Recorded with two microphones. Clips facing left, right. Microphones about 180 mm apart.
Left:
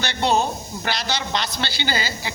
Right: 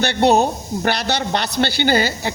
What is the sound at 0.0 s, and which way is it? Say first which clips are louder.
A man's voice: right 6 dB; 55° right (ahead or behind).